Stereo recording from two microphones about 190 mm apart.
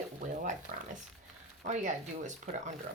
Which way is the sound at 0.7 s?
40° right (ahead or behind).